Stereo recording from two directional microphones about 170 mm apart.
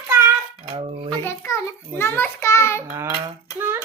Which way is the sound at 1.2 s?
15° left (ahead or behind).